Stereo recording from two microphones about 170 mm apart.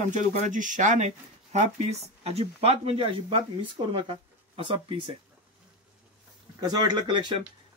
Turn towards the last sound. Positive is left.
turn(degrees=-25)  # may be behind; listen again after turning